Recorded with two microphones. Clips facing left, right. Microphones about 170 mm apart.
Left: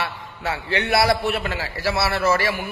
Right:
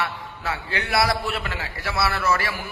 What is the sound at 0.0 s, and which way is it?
A man's voice, 25° left (ahead or behind).